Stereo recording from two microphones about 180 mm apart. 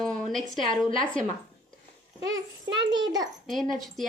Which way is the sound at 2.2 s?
20° right (ahead or behind).